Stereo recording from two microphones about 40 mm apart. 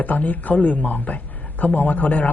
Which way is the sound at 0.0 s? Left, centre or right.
Left.